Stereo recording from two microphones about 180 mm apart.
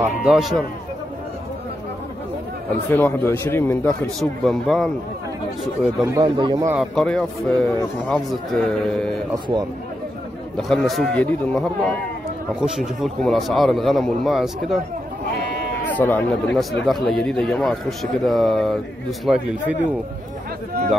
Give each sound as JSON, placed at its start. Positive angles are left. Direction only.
{"t": 0.0, "sound": "a man's voice", "side_deg": -5}
{"t": 2.9, "sound": "a man's voice", "side_deg": 10}
{"t": 4.2, "sound": "a man's voice", "side_deg": 0}
{"t": 6.0, "sound": "speech", "side_deg": -25}
{"t": 6.7, "sound": "a man's voice", "side_deg": 0}
{"t": 9.3, "sound": "speech", "side_deg": -20}
{"t": 10.7, "sound": "a man's voice", "side_deg": 0}
{"t": 15.9, "sound": "a man's voice", "side_deg": 10}